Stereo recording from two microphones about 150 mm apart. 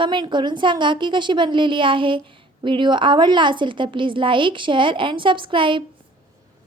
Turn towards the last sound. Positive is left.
turn(degrees=-35)  # may be behind; listen again after turning